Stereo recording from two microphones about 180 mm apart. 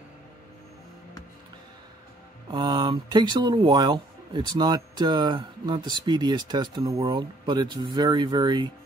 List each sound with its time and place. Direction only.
2.5 s speech: 25° right (ahead or behind)